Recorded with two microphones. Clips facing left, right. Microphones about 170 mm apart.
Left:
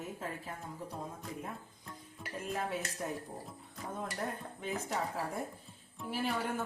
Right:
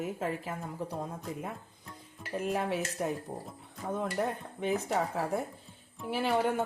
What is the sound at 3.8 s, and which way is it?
A woman's voice, 65° right (ahead or behind).